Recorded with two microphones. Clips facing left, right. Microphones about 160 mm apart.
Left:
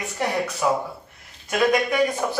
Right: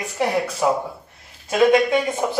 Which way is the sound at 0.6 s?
25° right (ahead or behind).